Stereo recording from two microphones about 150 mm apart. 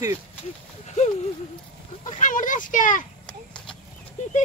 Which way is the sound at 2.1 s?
60° left (ahead or behind).